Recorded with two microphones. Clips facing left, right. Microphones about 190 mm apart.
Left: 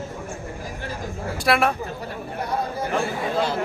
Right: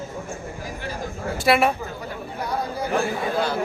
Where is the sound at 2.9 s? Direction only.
25° left (ahead or behind).